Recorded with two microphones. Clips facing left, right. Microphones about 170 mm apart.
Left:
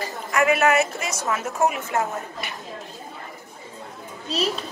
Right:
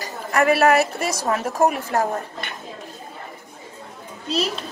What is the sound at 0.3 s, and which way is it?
A woman's voice, 35° right (ahead or behind).